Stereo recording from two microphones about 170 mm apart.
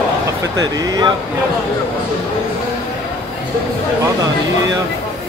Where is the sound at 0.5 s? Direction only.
20° right (ahead or behind).